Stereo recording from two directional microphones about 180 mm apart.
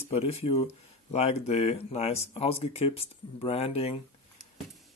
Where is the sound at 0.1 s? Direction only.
35° left (ahead or behind).